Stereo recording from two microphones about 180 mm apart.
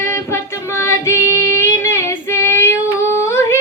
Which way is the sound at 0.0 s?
15° left (ahead or behind).